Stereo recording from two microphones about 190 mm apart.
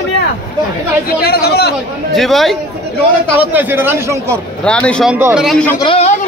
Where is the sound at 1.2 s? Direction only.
55° left (ahead or behind).